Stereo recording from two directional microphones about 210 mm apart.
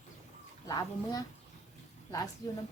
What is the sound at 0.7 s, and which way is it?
Speech, 20° left (ahead or behind).